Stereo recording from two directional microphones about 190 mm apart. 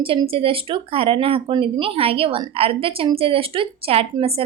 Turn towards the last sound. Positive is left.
turn(degrees=-30)  # may be behind; listen again after turning